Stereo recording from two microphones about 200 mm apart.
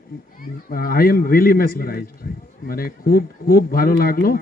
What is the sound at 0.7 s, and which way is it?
Speech, 45° left (ahead or behind).